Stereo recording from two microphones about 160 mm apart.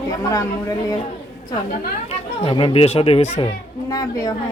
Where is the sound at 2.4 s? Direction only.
35° left (ahead or behind).